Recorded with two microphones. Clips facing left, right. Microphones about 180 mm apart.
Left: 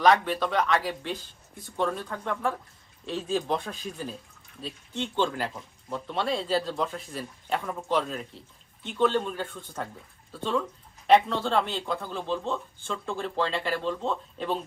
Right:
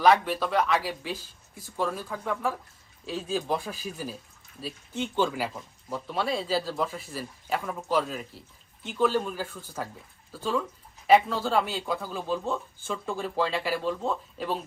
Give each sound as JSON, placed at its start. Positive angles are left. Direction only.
{"t": 0.0, "sound": "speech", "side_deg": -5}